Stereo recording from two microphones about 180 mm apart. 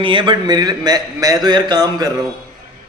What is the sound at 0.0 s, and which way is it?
A man's voice, 25° right (ahead or behind).